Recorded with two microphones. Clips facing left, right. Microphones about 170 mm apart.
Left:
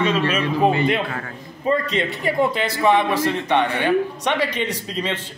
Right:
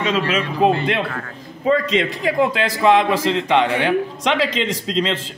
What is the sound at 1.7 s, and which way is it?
A man's voice, 90° right.